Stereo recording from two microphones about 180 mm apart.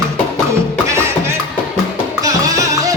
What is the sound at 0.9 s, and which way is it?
Music, 15° right (ahead or behind).